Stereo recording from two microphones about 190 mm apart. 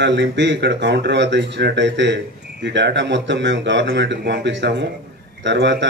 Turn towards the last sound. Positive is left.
turn(degrees=-65)  # may be behind; listen again after turning